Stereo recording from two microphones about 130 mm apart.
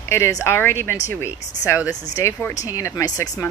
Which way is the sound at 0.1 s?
20° left (ahead or behind).